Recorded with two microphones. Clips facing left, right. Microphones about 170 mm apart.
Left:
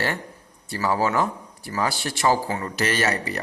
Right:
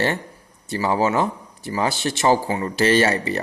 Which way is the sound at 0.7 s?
20° right (ahead or behind).